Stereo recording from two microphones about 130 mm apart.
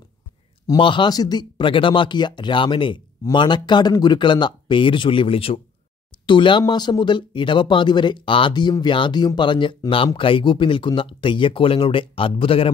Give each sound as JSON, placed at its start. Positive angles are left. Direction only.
{"t": 0.7, "sound": "speech", "side_deg": 40}